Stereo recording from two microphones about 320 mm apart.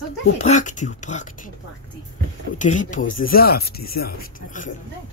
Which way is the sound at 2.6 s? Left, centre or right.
Left.